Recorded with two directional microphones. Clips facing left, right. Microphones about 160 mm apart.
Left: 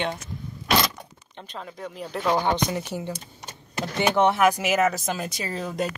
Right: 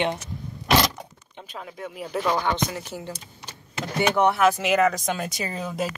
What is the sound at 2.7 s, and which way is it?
Speech, 20° left (ahead or behind).